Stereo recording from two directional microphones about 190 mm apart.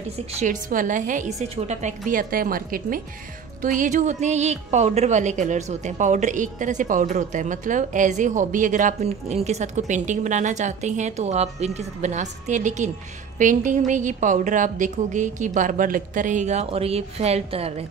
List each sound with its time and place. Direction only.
0.4 s a woman's voice: 45° right (ahead or behind)